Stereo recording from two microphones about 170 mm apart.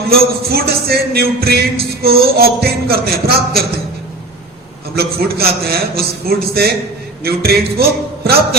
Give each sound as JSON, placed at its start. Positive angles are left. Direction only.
{"t": 0.1, "sound": "music", "side_deg": -65}
{"t": 4.9, "sound": "music", "side_deg": -65}